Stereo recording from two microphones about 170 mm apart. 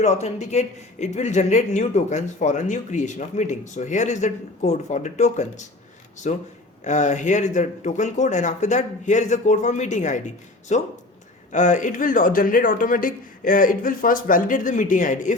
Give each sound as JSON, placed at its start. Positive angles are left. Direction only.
{"t": 0.0, "sound": "speech", "side_deg": 40}